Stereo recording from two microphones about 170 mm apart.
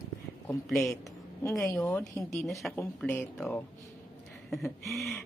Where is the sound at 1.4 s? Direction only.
20° left (ahead or behind).